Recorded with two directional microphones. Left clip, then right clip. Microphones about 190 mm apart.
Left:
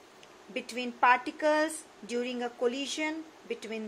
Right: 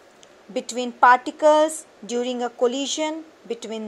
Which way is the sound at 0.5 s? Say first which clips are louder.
Right 9 dB; 25° right (ahead or behind).